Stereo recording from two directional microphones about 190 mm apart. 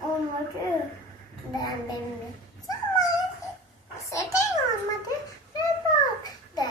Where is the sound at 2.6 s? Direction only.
20° left (ahead or behind).